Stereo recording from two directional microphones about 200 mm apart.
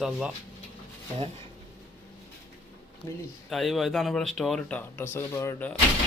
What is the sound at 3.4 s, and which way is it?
Speech, centre (ahead or behind).